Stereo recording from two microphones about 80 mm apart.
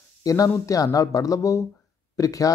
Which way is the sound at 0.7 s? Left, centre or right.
Left.